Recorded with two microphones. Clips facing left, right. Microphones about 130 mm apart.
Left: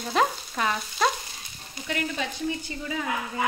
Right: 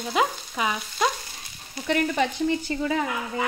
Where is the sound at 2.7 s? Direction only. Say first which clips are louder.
Right 8 dB; 70° right (ahead or behind).